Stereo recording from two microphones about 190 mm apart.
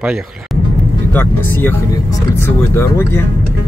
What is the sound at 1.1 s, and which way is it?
Speech, 10° left (ahead or behind).